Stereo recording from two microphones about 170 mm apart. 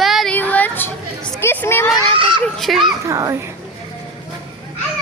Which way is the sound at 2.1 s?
30° right (ahead or behind).